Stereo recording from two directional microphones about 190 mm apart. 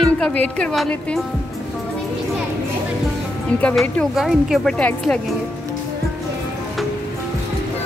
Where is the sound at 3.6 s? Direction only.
5° left (ahead or behind).